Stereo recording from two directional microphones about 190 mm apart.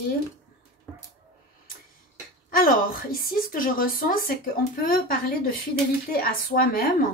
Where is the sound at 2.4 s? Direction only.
45° left (ahead or behind).